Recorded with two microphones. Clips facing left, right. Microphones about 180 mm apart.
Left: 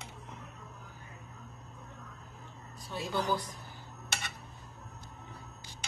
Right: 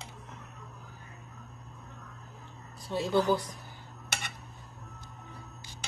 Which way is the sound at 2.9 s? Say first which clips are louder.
Right 7 dB; 25° right (ahead or behind).